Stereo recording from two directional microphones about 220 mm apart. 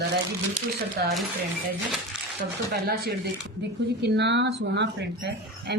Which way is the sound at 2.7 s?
45° right (ahead or behind).